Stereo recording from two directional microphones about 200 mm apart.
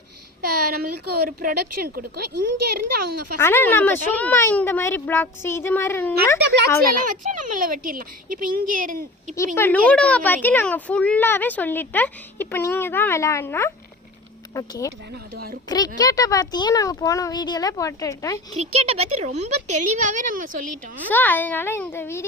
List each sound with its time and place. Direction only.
0.7 s speech: 50° right (ahead or behind)
3.3 s a woman's voice: 10° left (ahead or behind)
7.0 s speech: 40° right (ahead or behind)
9.6 s a woman's voice: 10° left (ahead or behind)
18.5 s a woman's voice: 30° right (ahead or behind)
21.1 s a woman's voice: 10° left (ahead or behind)